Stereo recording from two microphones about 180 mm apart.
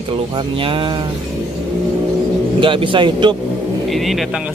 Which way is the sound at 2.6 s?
30° right (ahead or behind).